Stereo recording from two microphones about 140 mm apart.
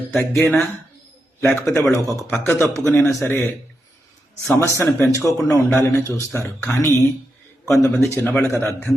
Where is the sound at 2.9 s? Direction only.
15° left (ahead or behind).